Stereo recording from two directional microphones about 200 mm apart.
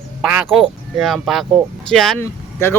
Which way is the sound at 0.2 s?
10° right (ahead or behind).